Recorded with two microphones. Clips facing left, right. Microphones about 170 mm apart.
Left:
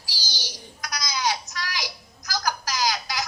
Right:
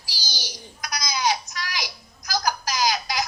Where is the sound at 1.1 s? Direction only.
15° right (ahead or behind).